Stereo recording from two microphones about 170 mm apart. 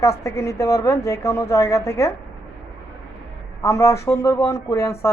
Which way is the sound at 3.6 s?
15° left (ahead or behind).